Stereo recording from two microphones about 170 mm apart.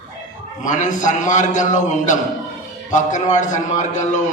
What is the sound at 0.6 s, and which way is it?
A man's voice, 45° left (ahead or behind).